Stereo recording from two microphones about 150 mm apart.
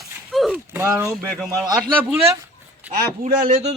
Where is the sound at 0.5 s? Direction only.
15° right (ahead or behind).